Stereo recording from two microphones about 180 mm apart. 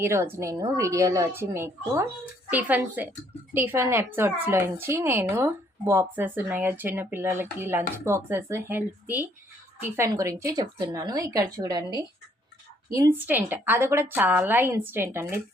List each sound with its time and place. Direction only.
0.0 s speech: 15° right (ahead or behind)